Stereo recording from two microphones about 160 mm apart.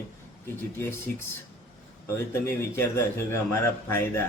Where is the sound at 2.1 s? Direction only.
15° left (ahead or behind).